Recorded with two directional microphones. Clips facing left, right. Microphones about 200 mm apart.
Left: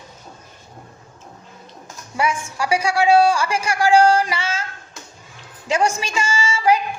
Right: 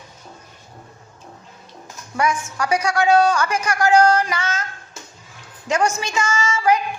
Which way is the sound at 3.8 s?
30° left (ahead or behind).